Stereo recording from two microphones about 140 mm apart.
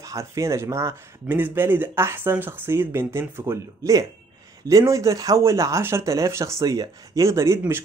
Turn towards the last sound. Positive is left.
turn(degrees=-20)  # may be behind; listen again after turning